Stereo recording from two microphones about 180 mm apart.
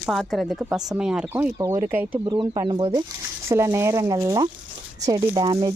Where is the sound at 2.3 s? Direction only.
25° right (ahead or behind).